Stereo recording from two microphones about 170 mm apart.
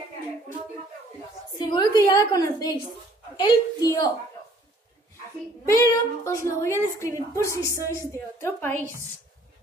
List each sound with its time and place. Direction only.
1.6 s a woman's voice: 25° left (ahead or behind)
5.7 s a woman's voice: 15° left (ahead or behind)